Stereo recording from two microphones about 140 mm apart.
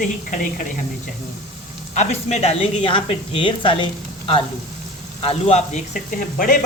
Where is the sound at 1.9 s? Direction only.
55° left (ahead or behind).